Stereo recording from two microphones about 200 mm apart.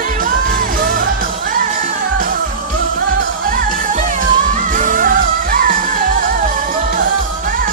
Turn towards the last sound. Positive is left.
turn(degrees=-45)  # may be behind; listen again after turning